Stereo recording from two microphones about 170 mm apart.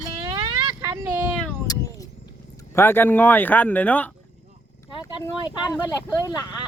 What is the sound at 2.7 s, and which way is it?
Speech, 15° left (ahead or behind).